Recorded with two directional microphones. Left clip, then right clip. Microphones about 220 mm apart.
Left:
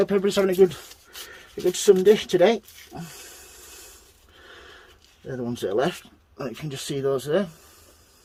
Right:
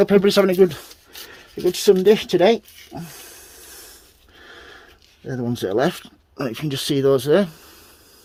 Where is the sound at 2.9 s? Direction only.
25° right (ahead or behind).